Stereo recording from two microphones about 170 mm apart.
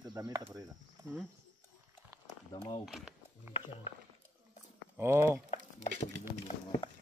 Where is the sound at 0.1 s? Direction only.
20° right (ahead or behind).